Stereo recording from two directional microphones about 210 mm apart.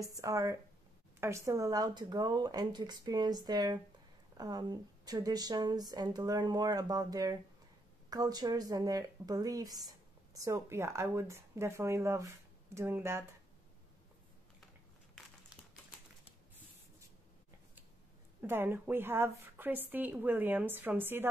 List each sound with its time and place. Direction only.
0.1 s speech: 15° right (ahead or behind)
15.1 s crumpling: centre (ahead or behind)
18.4 s speech: 10° right (ahead or behind)